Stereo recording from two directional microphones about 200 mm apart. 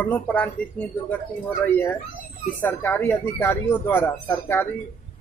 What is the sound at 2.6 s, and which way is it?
Speech, 10° left (ahead or behind).